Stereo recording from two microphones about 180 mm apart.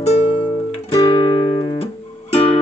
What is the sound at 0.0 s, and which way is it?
Music, 30° left (ahead or behind).